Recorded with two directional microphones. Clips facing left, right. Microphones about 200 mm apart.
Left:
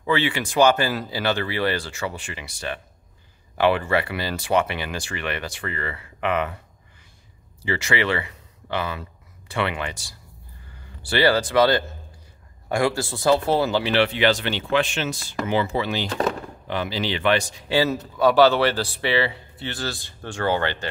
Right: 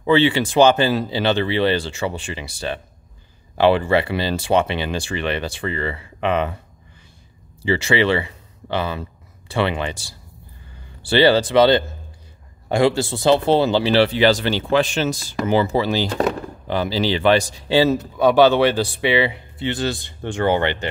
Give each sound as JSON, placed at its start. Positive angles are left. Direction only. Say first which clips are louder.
{"t": 0.0, "sound": "speech", "louder": "right 7 dB", "side_deg": -30}
{"t": 7.6, "sound": "speech", "louder": "right 6 dB", "side_deg": -30}